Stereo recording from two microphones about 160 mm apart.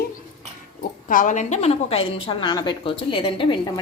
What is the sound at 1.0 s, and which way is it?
A woman's voice, 55° left (ahead or behind).